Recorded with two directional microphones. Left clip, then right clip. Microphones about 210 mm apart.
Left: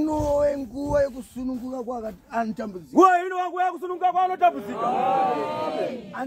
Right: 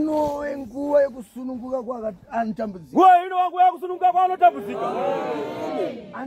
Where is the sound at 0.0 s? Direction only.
30° right (ahead or behind).